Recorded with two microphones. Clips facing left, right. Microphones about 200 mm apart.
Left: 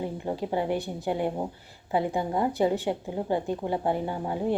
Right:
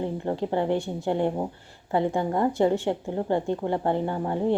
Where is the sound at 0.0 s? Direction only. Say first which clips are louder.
Right 3 dB; 10° left (ahead or behind).